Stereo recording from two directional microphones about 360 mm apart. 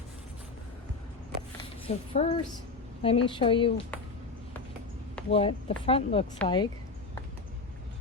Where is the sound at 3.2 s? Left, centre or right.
Centre.